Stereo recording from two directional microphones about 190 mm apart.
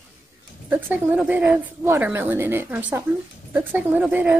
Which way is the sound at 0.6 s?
10° right (ahead or behind).